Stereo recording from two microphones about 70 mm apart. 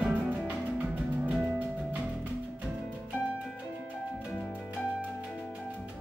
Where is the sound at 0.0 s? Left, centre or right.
Centre.